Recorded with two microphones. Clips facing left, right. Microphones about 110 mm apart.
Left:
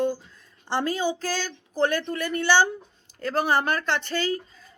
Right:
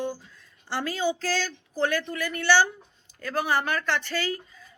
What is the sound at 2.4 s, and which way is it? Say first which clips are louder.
Speech: left 1 dB; 20° left (ahead or behind).